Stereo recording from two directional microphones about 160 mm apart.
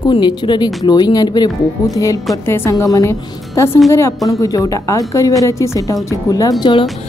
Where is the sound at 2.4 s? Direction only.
15° left (ahead or behind).